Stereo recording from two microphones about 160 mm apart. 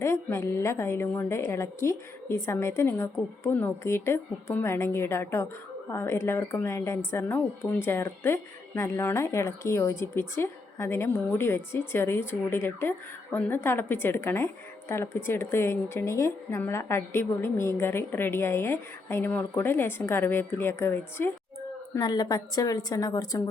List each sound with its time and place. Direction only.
0.0 s a woman's voice: 20° left (ahead or behind)